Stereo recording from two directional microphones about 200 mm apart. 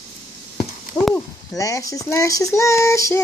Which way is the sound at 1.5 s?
15° left (ahead or behind).